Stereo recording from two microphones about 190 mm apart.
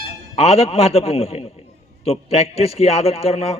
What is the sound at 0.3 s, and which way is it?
A man's voice, 35° left (ahead or behind).